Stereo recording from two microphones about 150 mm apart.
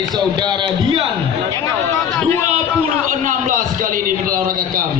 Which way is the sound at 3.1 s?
60° right (ahead or behind).